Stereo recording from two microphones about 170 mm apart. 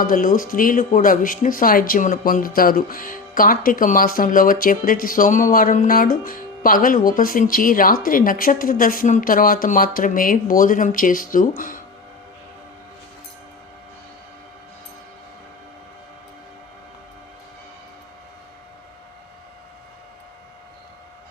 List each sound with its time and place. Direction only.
0.0 s speech: 50° left (ahead or behind)